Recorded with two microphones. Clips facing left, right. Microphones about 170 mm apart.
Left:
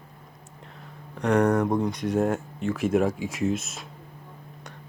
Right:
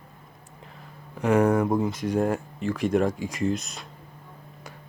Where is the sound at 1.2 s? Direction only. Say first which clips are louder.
Right 1 dB; 5° right (ahead or behind).